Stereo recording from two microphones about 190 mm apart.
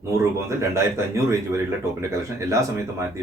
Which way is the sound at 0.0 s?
15° right (ahead or behind).